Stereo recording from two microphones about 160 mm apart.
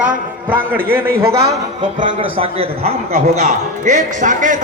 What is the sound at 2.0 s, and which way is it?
A man's voice, 35° right (ahead or behind).